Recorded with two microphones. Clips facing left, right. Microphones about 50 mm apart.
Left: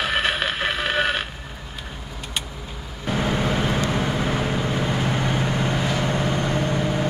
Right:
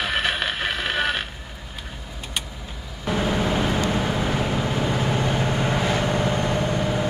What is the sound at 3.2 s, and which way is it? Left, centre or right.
Vehicle, centre.